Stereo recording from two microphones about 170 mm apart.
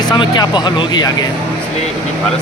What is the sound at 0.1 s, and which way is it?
Speech, 25° left (ahead or behind).